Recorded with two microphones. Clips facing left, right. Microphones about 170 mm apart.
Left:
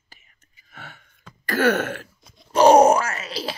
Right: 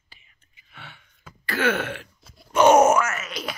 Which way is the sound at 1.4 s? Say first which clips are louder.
Left 4 dB; 45° left (ahead or behind).